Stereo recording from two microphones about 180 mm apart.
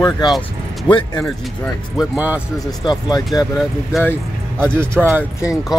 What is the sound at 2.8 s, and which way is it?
Speech, 20° left (ahead or behind).